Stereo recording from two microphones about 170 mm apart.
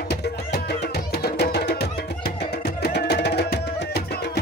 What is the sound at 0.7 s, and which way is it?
Music, 70° left (ahead or behind).